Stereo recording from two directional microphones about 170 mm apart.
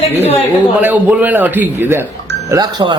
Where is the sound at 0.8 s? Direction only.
10° right (ahead or behind).